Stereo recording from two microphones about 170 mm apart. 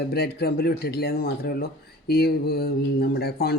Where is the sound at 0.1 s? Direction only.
70° left (ahead or behind).